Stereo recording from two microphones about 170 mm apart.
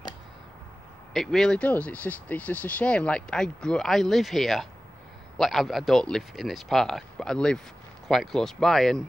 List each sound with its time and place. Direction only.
1.1 s speech: centre (ahead or behind)